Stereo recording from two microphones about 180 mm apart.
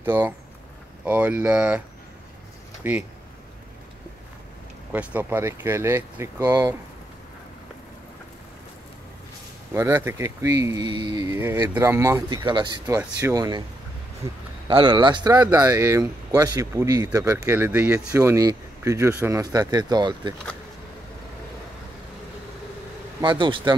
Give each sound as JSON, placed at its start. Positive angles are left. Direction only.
{"t": 0.0, "sound": "speech", "side_deg": -10}
{"t": 2.8, "sound": "speech", "side_deg": -10}
{"t": 4.9, "sound": "speech", "side_deg": -10}
{"t": 9.8, "sound": "speech", "side_deg": -10}
{"t": 14.7, "sound": "speech", "side_deg": -25}
{"t": 23.2, "sound": "speech", "side_deg": -25}